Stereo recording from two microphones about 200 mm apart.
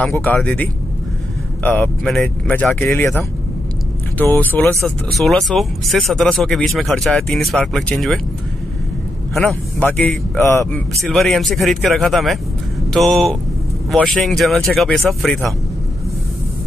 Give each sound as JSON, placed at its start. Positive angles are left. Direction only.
{"t": 0.0, "sound": "speech", "side_deg": 10}
{"t": 9.3, "sound": "speech", "side_deg": 0}